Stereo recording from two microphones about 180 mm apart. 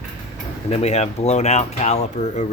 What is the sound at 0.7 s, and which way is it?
Speech, 35° left (ahead or behind).